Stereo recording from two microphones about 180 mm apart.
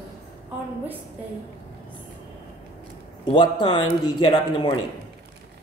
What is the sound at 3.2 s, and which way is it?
Speech, 25° left (ahead or behind).